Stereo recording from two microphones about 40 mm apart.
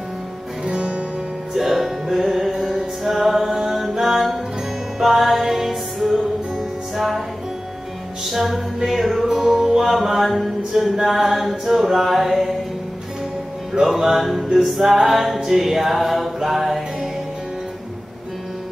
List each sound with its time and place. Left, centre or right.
0.7 s guitar: right
1.5 s music: centre
8.3 s music: centre
13.7 s music: centre